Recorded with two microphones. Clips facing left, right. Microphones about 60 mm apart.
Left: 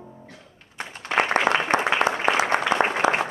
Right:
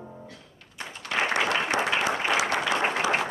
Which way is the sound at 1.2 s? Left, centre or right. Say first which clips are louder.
Left 4 dB; left.